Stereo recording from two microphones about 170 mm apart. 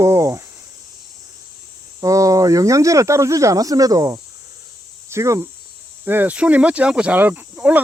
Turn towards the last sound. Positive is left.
turn(degrees=-10)  # may be behind; listen again after turning